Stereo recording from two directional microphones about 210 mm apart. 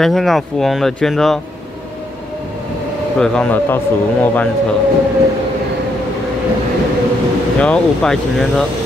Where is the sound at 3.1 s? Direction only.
5° left (ahead or behind).